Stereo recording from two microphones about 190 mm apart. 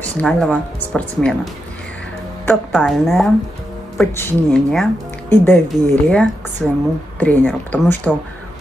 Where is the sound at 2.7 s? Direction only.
Centre (ahead or behind).